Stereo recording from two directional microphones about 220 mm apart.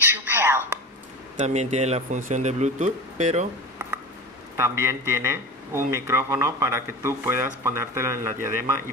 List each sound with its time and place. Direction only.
0.0 s a sound: 10° right (ahead or behind)
1.3 s speech: 30° right (ahead or behind)
4.6 s speech: 10° right (ahead or behind)